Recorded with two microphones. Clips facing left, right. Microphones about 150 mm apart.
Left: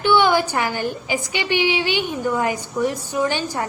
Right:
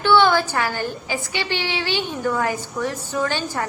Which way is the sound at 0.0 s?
15° left (ahead or behind).